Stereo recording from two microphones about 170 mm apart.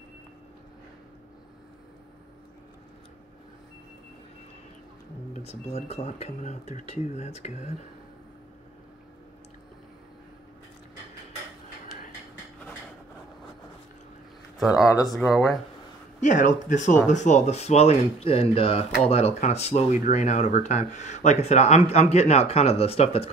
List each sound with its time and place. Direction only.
5.3 s speech: 40° left (ahead or behind)
14.6 s speech: centre (ahead or behind)
16.2 s speech: 50° left (ahead or behind)